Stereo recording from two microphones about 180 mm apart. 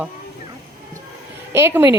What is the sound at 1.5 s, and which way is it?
Speech, 15° right (ahead or behind).